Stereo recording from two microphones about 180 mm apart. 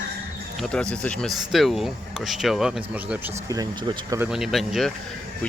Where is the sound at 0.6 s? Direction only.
5° left (ahead or behind).